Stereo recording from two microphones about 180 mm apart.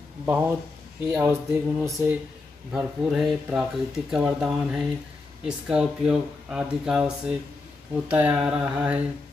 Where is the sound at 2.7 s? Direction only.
Centre (ahead or behind).